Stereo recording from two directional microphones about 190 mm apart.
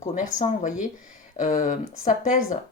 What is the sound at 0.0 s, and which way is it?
Speech, 40° left (ahead or behind).